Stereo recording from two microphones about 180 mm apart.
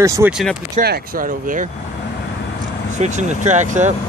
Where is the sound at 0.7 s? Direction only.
55° right (ahead or behind).